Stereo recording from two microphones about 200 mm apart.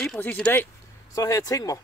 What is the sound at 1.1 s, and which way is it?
Speech, 15° left (ahead or behind).